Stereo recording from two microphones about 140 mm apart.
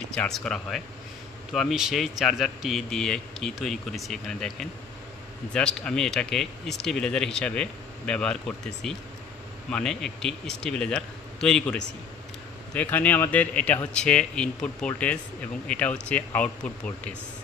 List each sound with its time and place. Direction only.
0.1 s a man's voice: 5° left (ahead or behind)